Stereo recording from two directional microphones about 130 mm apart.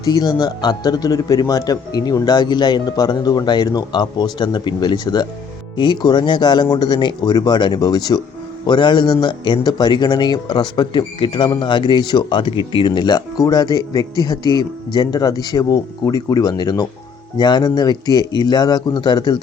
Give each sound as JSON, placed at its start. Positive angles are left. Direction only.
{"t": 0.0, "sound": "a man's voice", "side_deg": 30}